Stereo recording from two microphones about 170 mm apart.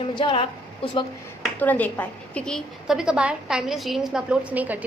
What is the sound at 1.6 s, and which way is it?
A woman's voice, 10° left (ahead or behind).